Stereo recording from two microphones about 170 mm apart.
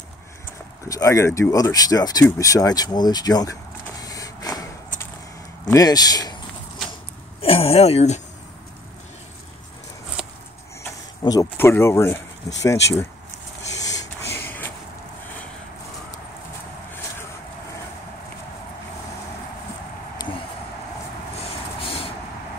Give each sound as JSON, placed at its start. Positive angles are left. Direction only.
{"t": 0.8, "sound": "speech", "side_deg": 20}
{"t": 4.0, "sound": "printer", "side_deg": 20}
{"t": 5.7, "sound": "speech", "side_deg": 20}
{"t": 7.4, "sound": "speech", "side_deg": 35}
{"t": 10.8, "sound": "speech", "side_deg": 15}
{"t": 13.7, "sound": "shuffle", "side_deg": 20}
{"t": 21.8, "sound": "vehicle", "side_deg": 35}